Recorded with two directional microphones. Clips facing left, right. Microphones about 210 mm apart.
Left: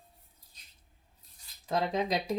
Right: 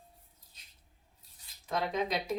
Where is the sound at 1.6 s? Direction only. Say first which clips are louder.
Left 2 dB; 35° left (ahead or behind).